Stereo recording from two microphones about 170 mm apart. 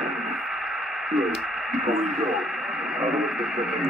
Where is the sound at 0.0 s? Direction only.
Centre (ahead or behind).